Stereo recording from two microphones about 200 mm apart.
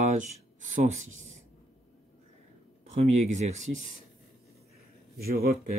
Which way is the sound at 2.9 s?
35° right (ahead or behind).